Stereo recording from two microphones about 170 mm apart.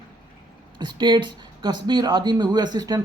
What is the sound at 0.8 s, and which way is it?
Speech, 25° right (ahead or behind).